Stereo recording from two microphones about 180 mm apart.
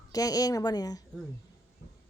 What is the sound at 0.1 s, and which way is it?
Speech, 20° left (ahead or behind).